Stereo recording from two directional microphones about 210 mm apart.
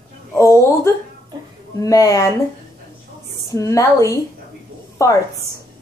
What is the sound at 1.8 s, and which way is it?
Speech, 15° left (ahead or behind).